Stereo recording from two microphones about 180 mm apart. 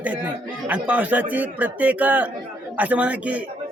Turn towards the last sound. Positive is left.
turn(degrees=-10)  # may be behind; listen again after turning